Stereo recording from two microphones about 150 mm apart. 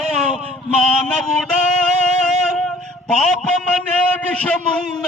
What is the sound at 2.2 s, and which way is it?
Music, 5° left (ahead or behind).